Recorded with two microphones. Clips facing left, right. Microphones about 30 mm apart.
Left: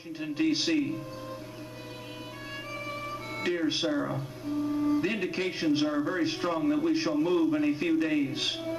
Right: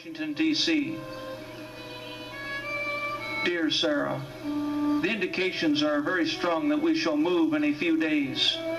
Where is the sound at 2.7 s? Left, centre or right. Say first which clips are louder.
Right 6 dB; right.